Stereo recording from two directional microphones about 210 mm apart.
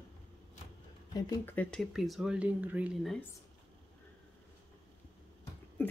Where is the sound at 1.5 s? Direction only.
5° left (ahead or behind).